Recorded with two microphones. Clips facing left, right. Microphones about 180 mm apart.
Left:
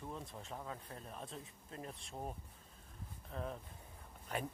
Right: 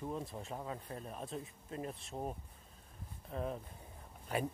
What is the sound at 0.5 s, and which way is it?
Speech, 15° right (ahead or behind).